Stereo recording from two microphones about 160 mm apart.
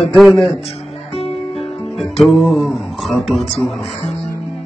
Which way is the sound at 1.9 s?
Centre (ahead or behind).